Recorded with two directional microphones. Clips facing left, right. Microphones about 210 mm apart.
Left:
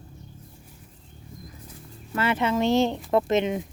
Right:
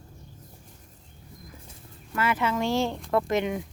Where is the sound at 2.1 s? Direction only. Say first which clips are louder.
Left 2 dB; 25° left (ahead or behind).